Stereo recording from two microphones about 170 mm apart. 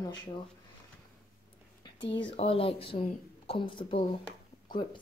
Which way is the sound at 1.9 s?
90° left.